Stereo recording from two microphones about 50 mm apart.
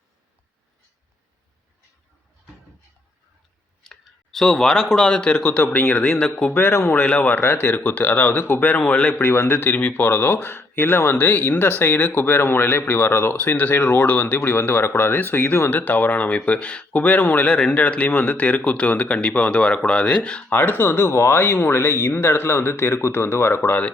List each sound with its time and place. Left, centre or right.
3.8 s speech: centre
5.4 s speech: left
5.8 s speech: centre
6.3 s speech: left
7.4 s speech: left
8.6 s speech: left
9.2 s speech: left
14.4 s speech: left
20.5 s speech: left